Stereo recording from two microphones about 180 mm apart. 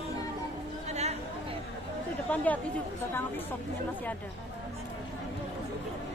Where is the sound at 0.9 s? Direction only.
35° right (ahead or behind).